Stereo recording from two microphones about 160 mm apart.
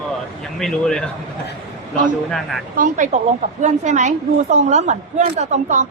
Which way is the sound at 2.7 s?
55° right (ahead or behind).